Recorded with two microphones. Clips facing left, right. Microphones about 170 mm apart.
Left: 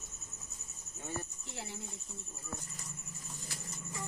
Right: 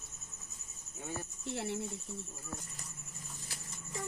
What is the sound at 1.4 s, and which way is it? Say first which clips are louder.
Speech: right 9 dB; 65° right (ahead or behind).